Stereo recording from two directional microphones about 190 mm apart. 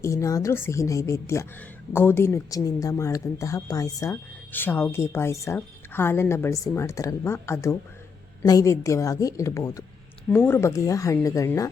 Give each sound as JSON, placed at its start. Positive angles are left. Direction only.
{"t": 0.0, "sound": "a woman's voice", "side_deg": 15}